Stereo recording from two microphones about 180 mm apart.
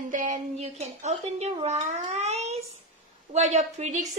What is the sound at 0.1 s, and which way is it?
Speech, 45° right (ahead or behind).